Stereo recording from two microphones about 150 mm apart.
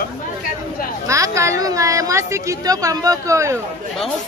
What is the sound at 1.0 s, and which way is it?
A woman's voice, 20° right (ahead or behind).